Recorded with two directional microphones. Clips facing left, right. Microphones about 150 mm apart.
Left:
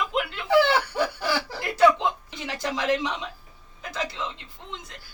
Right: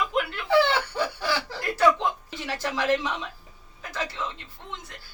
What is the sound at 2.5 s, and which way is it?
A man's voice, 20° left (ahead or behind).